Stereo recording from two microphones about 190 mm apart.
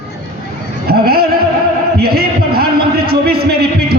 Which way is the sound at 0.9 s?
55° right (ahead or behind).